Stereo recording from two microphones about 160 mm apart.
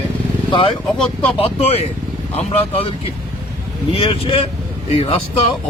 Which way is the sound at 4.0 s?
35° left (ahead or behind).